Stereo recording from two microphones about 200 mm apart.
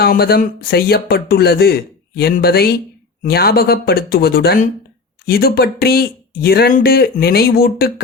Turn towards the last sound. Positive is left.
turn(degrees=50)  # may be behind; listen again after turning